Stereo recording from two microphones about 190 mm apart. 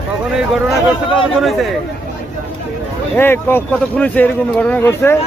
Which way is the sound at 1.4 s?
Centre (ahead or behind).